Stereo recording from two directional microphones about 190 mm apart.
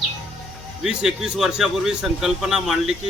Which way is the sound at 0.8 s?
Centre (ahead or behind).